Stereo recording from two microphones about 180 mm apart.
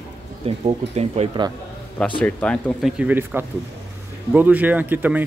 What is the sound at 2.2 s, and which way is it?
Speech, 5° left (ahead or behind).